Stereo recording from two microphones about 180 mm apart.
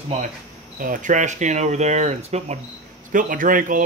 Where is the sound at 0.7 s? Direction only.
45° right (ahead or behind).